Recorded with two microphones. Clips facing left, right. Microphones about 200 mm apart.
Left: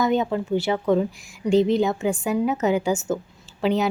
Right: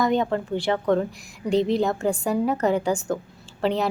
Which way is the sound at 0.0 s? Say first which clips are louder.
Left 1 dB; 5° left (ahead or behind).